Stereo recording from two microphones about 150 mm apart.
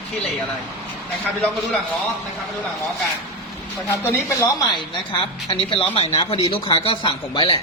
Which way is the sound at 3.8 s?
20° left (ahead or behind).